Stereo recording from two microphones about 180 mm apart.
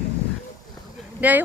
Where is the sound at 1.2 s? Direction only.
10° right (ahead or behind).